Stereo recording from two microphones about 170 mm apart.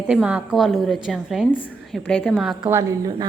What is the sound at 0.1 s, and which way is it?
A woman's voice, 10° right (ahead or behind).